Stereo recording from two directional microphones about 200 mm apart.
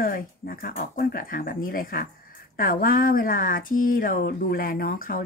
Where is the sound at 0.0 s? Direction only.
45° left (ahead or behind).